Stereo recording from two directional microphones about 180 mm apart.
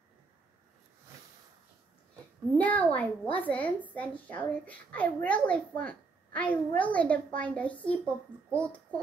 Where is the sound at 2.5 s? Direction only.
10° left (ahead or behind).